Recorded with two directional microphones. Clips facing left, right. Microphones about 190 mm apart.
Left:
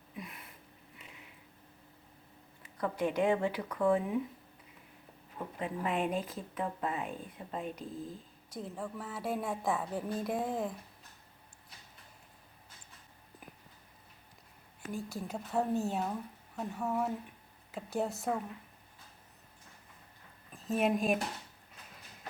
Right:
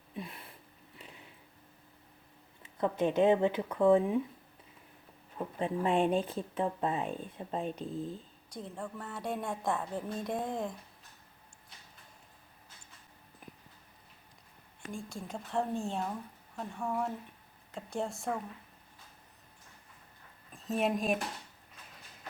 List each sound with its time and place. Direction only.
0.2 s a sound: 30° right (ahead or behind)
2.6 s speech: 25° right (ahead or behind)
5.5 s speech: 30° right (ahead or behind)
8.4 s a woman's voice: centre (ahead or behind)
13.4 s a sound: 5° left (ahead or behind)
14.8 s a woman's voice: 5° left (ahead or behind)
20.5 s a woman's voice: centre (ahead or behind)